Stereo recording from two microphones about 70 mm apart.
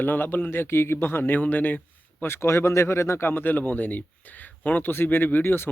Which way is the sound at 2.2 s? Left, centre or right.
Left.